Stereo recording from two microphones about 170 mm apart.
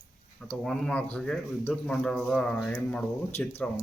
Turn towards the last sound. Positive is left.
turn(degrees=10)  # may be behind; listen again after turning